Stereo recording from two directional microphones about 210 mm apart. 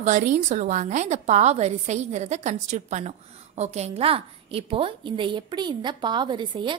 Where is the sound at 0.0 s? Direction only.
35° right (ahead or behind).